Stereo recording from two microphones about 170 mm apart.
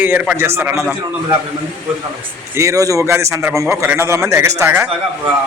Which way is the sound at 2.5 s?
20° right (ahead or behind).